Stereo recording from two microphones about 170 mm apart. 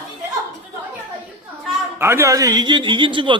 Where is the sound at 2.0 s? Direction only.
15° right (ahead or behind).